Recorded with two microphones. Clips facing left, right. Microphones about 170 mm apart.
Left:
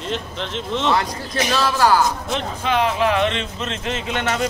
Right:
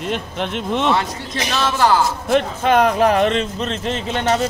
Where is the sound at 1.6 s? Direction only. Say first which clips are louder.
Right 1 dB; 25° right (ahead or behind).